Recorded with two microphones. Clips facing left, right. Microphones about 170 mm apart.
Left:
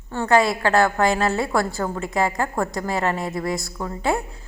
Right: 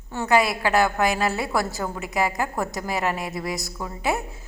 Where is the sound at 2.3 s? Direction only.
20° right (ahead or behind).